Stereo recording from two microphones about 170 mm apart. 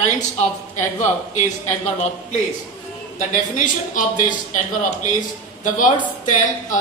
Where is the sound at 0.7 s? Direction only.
45° left (ahead or behind).